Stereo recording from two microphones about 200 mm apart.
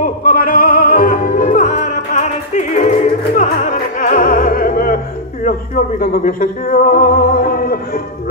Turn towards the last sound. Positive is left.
turn(degrees=45)  # may be behind; listen again after turning